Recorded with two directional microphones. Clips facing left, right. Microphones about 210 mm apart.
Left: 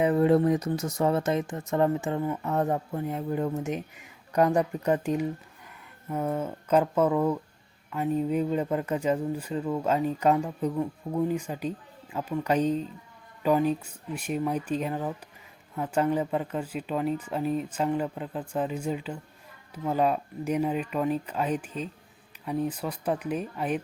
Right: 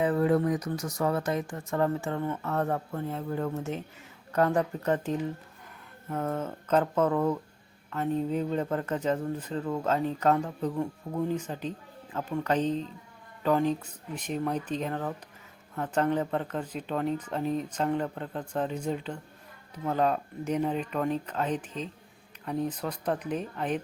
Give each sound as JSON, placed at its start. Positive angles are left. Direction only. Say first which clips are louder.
{"t": 0.0, "sound": "speech", "louder": "left 3 dB", "side_deg": 20}